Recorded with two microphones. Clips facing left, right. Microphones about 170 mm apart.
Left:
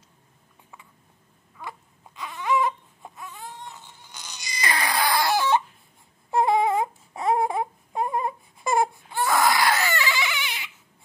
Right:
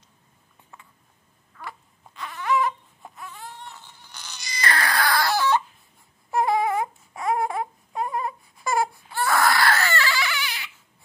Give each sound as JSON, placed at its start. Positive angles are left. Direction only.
{"t": 1.6, "sound": "baby cry", "side_deg": 15}